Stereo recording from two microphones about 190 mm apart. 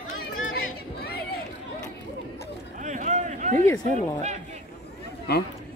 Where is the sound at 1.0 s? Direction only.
55° left (ahead or behind).